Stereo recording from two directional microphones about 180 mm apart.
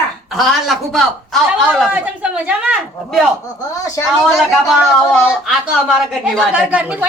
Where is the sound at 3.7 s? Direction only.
15° left (ahead or behind).